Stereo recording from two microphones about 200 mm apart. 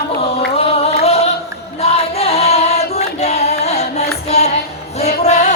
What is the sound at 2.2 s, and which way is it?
Singing, 30° left (ahead or behind).